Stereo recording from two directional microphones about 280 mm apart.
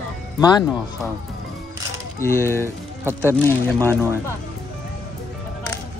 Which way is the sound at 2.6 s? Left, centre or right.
Centre.